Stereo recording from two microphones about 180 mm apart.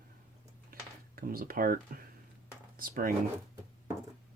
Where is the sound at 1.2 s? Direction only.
55° right (ahead or behind).